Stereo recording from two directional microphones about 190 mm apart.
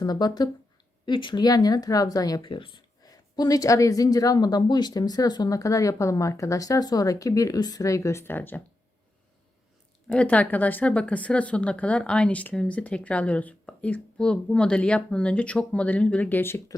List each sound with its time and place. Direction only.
0.0 s speech: 20° left (ahead or behind)
10.1 s speech: 5° left (ahead or behind)